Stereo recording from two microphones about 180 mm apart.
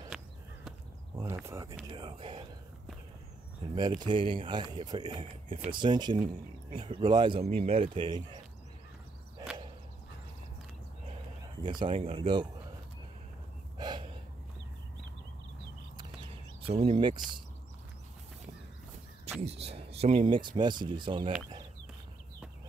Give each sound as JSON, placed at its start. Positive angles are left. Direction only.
{"t": 1.4, "sound": "speech", "side_deg": -20}
{"t": 3.7, "sound": "speech", "side_deg": -25}
{"t": 11.6, "sound": "speech", "side_deg": -25}
{"t": 13.7, "sound": "a sound", "side_deg": -25}
{"t": 16.6, "sound": "speech", "side_deg": -30}
{"t": 19.4, "sound": "speech", "side_deg": -35}